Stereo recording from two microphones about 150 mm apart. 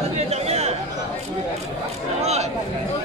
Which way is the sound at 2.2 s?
45° right (ahead or behind).